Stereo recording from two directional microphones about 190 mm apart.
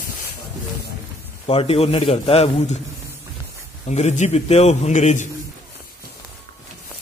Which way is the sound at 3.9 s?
35° left (ahead or behind).